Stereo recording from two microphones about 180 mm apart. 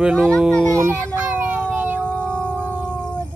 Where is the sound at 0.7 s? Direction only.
15° right (ahead or behind).